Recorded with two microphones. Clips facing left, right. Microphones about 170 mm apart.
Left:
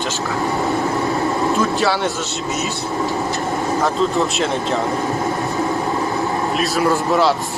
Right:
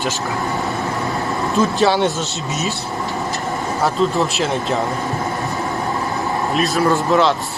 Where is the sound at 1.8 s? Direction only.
20° right (ahead or behind).